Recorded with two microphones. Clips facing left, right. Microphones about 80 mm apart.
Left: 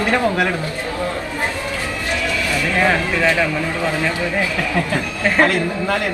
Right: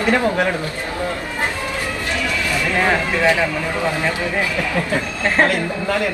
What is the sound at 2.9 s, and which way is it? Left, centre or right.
Speech, centre.